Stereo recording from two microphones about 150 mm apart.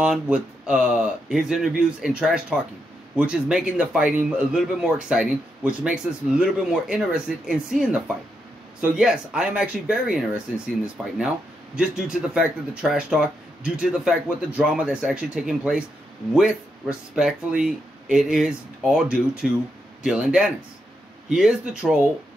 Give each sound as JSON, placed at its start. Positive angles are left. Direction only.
{"t": 0.0, "sound": "a man's voice", "side_deg": -5}